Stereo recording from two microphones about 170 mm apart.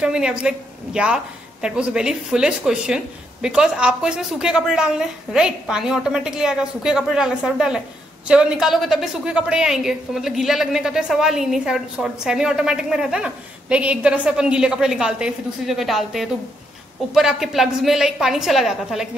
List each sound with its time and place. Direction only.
0.0 s a woman's voice: 5° right (ahead or behind)